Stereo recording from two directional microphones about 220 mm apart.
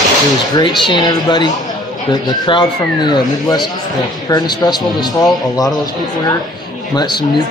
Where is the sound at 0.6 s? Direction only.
20° left (ahead or behind).